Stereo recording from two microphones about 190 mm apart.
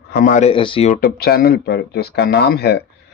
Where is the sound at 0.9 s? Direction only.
50° left (ahead or behind).